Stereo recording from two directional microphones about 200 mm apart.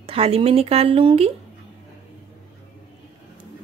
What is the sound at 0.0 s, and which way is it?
Speech, 30° right (ahead or behind).